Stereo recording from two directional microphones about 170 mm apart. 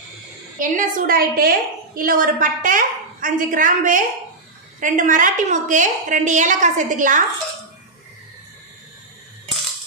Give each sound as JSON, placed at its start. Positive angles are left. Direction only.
{"t": 0.6, "sound": "a woman's voice", "side_deg": -50}